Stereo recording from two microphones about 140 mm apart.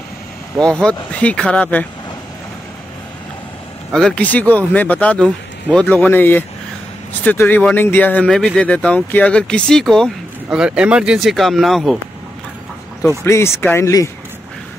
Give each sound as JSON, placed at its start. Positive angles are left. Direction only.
{"t": 0.6, "sound": "speech", "side_deg": 5}
{"t": 3.9, "sound": "speech", "side_deg": 5}
{"t": 10.6, "sound": "speech", "side_deg": -5}
{"t": 13.2, "sound": "speech", "side_deg": 20}